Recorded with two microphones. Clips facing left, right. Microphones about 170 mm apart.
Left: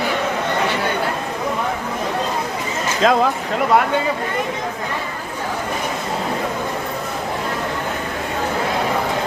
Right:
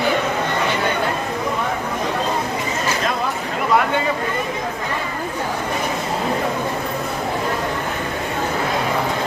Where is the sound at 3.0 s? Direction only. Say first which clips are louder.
Left 12 dB; 90° left.